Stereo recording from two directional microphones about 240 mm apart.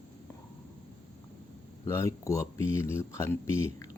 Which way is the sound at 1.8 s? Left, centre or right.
Centre.